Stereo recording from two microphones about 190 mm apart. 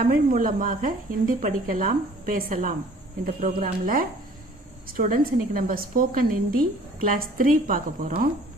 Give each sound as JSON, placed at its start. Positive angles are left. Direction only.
{"t": 0.0, "sound": "a woman's voice", "side_deg": -50}